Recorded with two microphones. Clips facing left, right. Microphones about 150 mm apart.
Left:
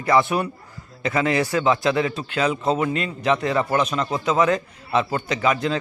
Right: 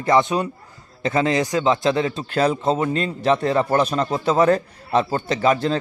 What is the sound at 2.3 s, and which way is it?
Speech, 40° right (ahead or behind).